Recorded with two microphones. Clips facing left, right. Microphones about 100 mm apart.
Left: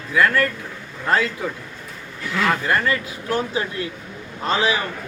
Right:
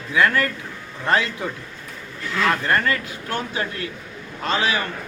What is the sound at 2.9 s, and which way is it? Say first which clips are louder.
Speech: left 2 dB; 20° left (ahead or behind).